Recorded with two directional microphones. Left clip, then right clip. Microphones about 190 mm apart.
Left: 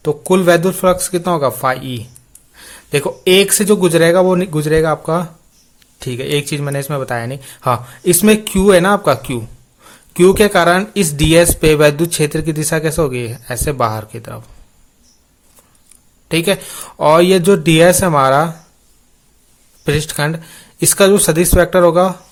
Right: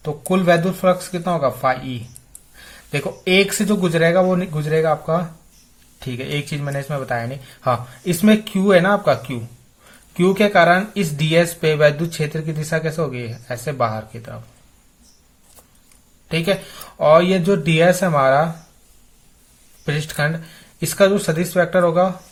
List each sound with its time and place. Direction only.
0.0 s speech: 50° left (ahead or behind)
16.3 s speech: 40° left (ahead or behind)
19.8 s speech: 45° left (ahead or behind)